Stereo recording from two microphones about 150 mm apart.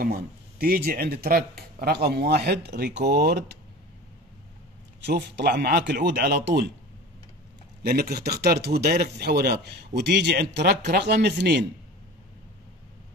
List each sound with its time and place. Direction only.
0.0 s speech: 80° right
5.1 s speech: 90° right
7.8 s speech: 90° right